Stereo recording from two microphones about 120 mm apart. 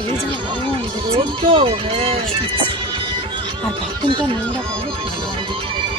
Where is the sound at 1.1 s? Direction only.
50° right (ahead or behind).